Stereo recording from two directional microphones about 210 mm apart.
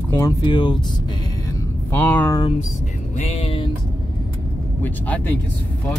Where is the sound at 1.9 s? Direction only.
10° left (ahead or behind).